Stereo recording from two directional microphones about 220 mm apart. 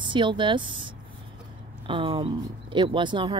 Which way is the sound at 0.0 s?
20° right (ahead or behind).